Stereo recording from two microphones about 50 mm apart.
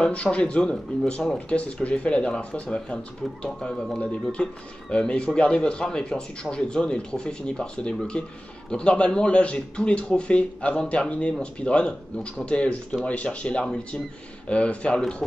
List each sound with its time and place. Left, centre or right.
0.0 s speech: left